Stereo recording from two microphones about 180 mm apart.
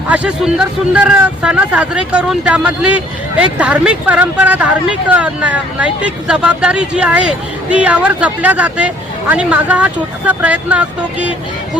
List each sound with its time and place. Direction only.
0.1 s a man's voice: 5° right (ahead or behind)